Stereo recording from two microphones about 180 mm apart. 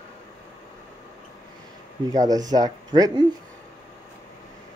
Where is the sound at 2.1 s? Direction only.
20° right (ahead or behind).